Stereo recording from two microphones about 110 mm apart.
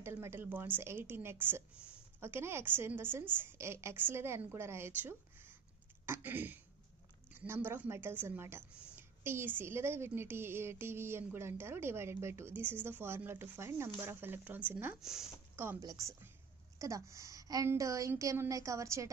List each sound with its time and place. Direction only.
0.0 s a woman's voice: 20° right (ahead or behind)
15.0 s speech: 5° right (ahead or behind)
15.5 s speech: 15° right (ahead or behind)
15.8 s a woman's voice: 35° right (ahead or behind)